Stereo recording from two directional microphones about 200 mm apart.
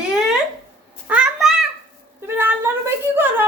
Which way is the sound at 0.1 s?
5° right (ahead or behind).